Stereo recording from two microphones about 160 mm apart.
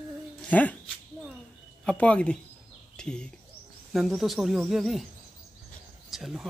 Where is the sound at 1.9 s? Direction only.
10° left (ahead or behind).